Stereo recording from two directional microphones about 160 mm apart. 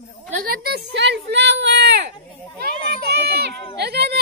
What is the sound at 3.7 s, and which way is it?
Speech, 90° right.